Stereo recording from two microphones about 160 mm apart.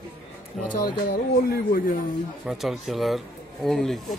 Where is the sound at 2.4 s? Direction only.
Centre (ahead or behind).